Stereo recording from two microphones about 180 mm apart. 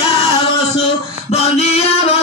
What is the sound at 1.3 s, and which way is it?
Music, 35° left (ahead or behind).